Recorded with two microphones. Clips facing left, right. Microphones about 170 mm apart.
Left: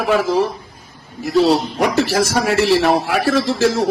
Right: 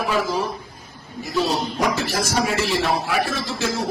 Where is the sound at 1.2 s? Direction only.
70° left (ahead or behind).